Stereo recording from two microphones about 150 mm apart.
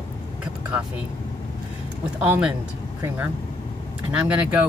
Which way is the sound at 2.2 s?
10° right (ahead or behind).